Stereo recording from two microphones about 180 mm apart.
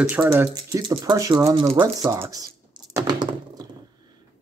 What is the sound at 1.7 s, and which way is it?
Typing, 20° right (ahead or behind).